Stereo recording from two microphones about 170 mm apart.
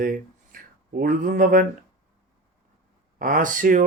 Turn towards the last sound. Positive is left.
turn(degrees=-50)  # may be behind; listen again after turning